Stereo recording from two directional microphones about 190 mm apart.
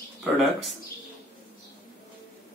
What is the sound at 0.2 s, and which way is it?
Speech, centre (ahead or behind).